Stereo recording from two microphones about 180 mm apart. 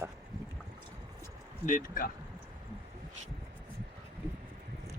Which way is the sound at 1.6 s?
50° left (ahead or behind).